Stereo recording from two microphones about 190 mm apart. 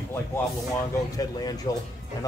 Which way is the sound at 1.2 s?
20° left (ahead or behind).